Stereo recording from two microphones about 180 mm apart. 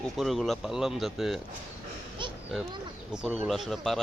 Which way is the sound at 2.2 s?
25° right (ahead or behind).